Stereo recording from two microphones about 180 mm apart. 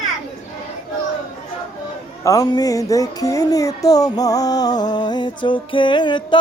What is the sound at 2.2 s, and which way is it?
Music, 20° left (ahead or behind).